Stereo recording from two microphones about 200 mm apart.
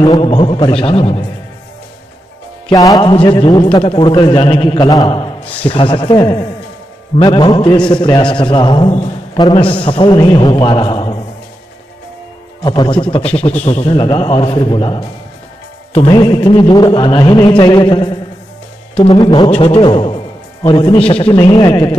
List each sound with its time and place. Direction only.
0.0 s a man's voice: 20° left (ahead or behind)
2.7 s a man's voice: 20° left (ahead or behind)
12.6 s a man's voice: 20° left (ahead or behind)